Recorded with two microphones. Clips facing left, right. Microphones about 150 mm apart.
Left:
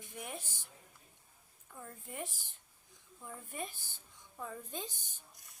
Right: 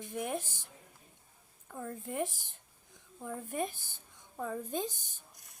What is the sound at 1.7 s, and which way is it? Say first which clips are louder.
Speech: right 9 dB; 55° right (ahead or behind).